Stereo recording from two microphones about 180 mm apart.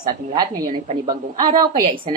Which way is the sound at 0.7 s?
45° right (ahead or behind).